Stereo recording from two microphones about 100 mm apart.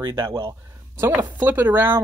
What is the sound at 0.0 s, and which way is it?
Speech, 30° right (ahead or behind).